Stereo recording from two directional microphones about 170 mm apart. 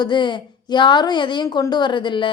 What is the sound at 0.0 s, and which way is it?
A woman's voice, 25° left (ahead or behind).